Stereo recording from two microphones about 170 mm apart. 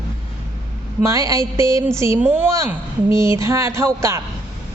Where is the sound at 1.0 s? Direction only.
20° right (ahead or behind).